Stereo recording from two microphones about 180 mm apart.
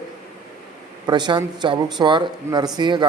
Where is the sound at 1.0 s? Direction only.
25° right (ahead or behind).